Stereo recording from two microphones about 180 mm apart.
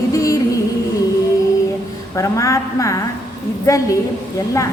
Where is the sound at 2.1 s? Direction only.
15° left (ahead or behind).